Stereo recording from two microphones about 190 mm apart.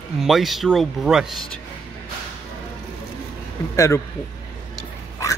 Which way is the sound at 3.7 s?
15° left (ahead or behind).